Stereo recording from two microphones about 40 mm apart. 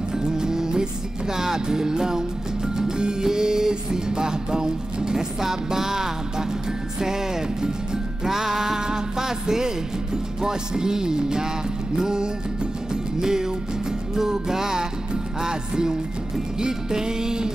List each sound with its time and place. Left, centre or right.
0.2 s music: centre